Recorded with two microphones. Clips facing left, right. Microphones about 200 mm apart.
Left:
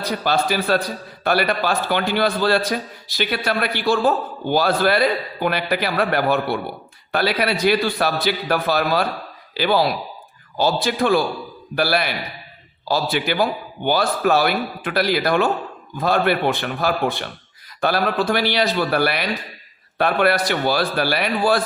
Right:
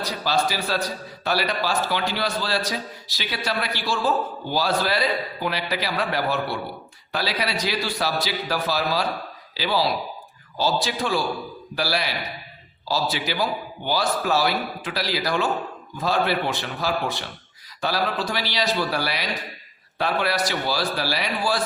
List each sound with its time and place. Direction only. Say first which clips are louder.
0.0 s a man's voice: left 3 dB; 55° left (ahead or behind)